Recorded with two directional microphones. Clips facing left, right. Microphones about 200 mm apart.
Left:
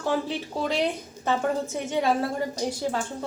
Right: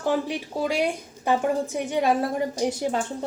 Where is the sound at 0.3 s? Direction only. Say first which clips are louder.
Right 2 dB; 10° right (ahead or behind).